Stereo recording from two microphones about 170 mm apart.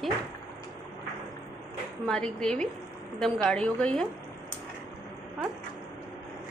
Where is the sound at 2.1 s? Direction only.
5° left (ahead or behind).